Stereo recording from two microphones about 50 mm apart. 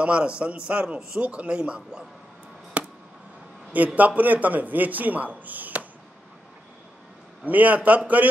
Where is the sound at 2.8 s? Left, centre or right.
Right.